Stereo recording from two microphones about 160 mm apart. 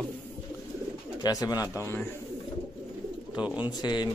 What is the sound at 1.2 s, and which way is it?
Speech, 25° left (ahead or behind).